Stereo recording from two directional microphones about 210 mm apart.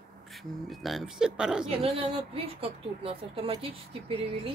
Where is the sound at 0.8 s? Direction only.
Centre (ahead or behind).